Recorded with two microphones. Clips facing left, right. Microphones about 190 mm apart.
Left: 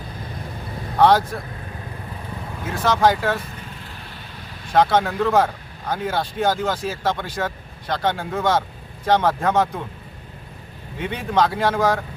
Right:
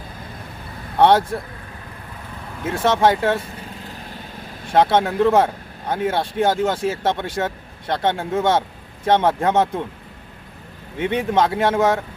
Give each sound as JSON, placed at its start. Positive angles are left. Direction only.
{"t": 0.9, "sound": "speech", "side_deg": -25}
{"t": 2.6, "sound": "speech", "side_deg": -25}
{"t": 3.8, "sound": "vehicle", "side_deg": -40}
{"t": 4.7, "sound": "speech", "side_deg": -25}
{"t": 11.0, "sound": "speech", "side_deg": -20}